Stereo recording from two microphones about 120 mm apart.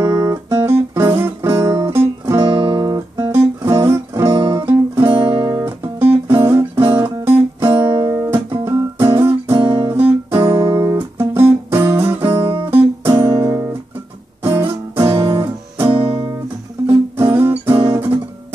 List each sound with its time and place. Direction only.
0.0 s guitar: 25° right (ahead or behind)
1.2 s music: 20° right (ahead or behind)
2.4 s guitar: 40° right (ahead or behind)
3.3 s music: 25° right (ahead or behind)
5.1 s music: 35° right (ahead or behind)
9.8 s guitar: 20° right (ahead or behind)
13.2 s music: 25° right (ahead or behind)
16.1 s music: 35° right (ahead or behind)
17.2 s music: 20° right (ahead or behind)